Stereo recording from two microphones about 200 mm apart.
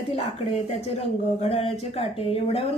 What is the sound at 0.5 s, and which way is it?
Speech, 30° left (ahead or behind).